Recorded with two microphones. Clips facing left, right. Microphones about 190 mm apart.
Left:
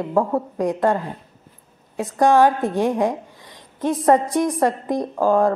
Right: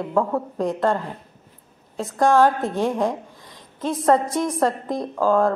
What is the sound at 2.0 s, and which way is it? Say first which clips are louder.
A woman's voice: left 2 dB; 15° left (ahead or behind).